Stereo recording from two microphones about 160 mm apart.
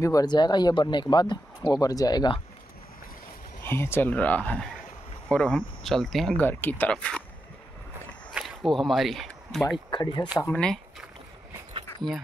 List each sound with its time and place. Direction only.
0.0 s speech: 25° left (ahead or behind)
3.6 s speech: 15° left (ahead or behind)
8.3 s a sound: centre (ahead or behind)
9.8 s speech: 30° left (ahead or behind)
10.4 s speech: 5° left (ahead or behind)